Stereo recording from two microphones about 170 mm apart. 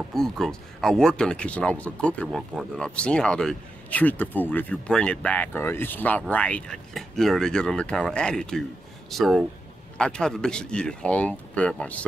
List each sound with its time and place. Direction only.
0.1 s speech: centre (ahead or behind)